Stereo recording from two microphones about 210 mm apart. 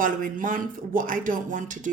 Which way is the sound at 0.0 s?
40° right (ahead or behind).